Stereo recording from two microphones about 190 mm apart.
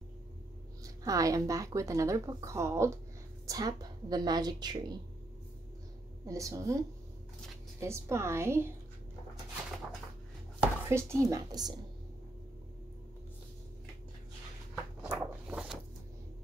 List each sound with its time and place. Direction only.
0.8 s a woman's voice: 15° right (ahead or behind)
6.2 s a woman's voice: 15° right (ahead or behind)
7.8 s a woman's voice: 15° right (ahead or behind)
10.6 s speech: 15° right (ahead or behind)
15.0 s a sound: 5° right (ahead or behind)